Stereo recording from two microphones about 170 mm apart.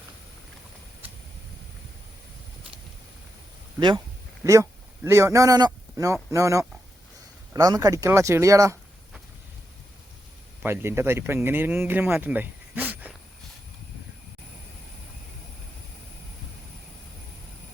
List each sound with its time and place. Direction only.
3.8 s speech: 25° right (ahead or behind)
10.6 s speech: 15° right (ahead or behind)